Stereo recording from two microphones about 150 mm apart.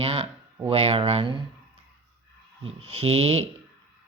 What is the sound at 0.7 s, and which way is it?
Speech, 40° right (ahead or behind).